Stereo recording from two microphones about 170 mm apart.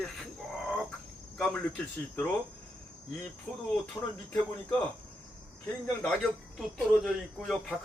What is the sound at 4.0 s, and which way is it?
Speech, 15° left (ahead or behind).